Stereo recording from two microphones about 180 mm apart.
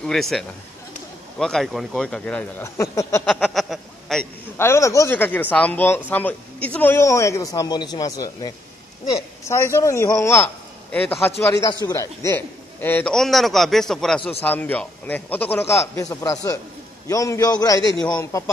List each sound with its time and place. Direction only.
0.0 s a man's voice: centre (ahead or behind)
3.3 s a man's voice: centre (ahead or behind)
4.6 s a man's voice: 15° left (ahead or behind)